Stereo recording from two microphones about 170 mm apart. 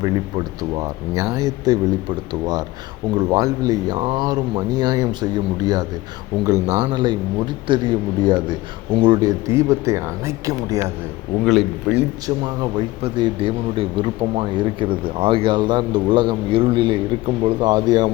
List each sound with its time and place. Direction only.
0.0 s speech: 20° right (ahead or behind)
9.5 s speech: 15° right (ahead or behind)
11.4 s speech: 5° right (ahead or behind)
12.2 s speech: 25° right (ahead or behind)